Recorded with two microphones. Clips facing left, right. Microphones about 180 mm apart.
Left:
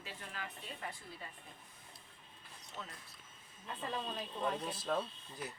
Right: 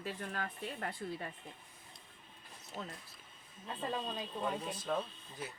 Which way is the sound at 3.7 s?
25° right (ahead or behind).